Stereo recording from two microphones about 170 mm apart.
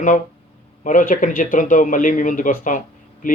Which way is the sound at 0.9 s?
50° left (ahead or behind).